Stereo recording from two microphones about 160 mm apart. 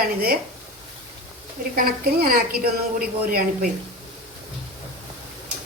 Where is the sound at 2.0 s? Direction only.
70° right (ahead or behind).